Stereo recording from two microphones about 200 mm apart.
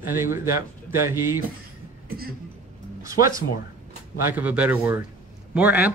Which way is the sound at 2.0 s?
50° right (ahead or behind).